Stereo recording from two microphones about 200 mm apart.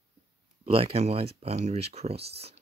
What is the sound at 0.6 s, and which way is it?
Speech, 30° right (ahead or behind).